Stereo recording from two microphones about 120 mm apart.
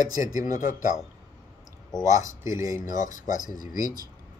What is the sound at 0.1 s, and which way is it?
Speech, 30° right (ahead or behind).